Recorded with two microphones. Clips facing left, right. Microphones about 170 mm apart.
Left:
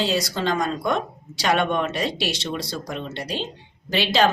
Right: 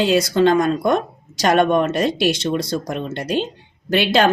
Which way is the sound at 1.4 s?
45° right (ahead or behind).